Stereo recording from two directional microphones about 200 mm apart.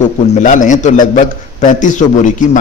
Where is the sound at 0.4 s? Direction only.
40° left (ahead or behind).